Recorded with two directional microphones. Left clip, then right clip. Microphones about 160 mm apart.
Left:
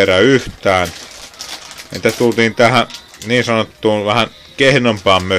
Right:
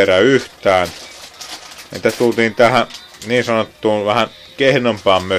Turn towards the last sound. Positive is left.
turn(degrees=5)  # may be behind; listen again after turning